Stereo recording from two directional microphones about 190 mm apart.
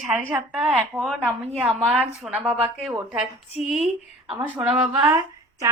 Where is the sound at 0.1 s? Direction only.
10° right (ahead or behind).